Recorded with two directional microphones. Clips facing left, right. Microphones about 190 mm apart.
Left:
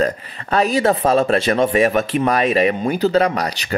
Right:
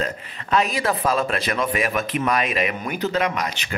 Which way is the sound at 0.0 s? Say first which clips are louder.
Left 8 dB; 35° left (ahead or behind).